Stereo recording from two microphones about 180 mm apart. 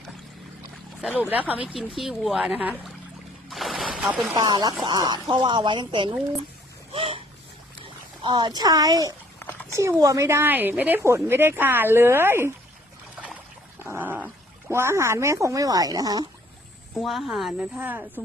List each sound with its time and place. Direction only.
1.0 s speech: 5° right (ahead or behind)
3.5 s a sound: centre (ahead or behind)
4.4 s speech: 25° right (ahead or behind)
6.9 s boat: 30° right (ahead or behind)
8.2 s speech: 25° right (ahead or behind)
9.4 s a sound: 10° left (ahead or behind)
9.7 s speech: 15° right (ahead or behind)
13.2 s a sound: 10° right (ahead or behind)
14.7 s speech: 15° right (ahead or behind)
16.9 s speech: centre (ahead or behind)